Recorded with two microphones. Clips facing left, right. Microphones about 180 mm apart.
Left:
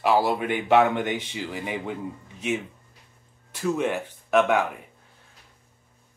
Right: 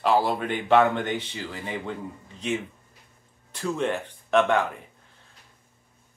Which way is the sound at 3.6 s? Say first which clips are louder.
Left 2 dB; 10° left (ahead or behind).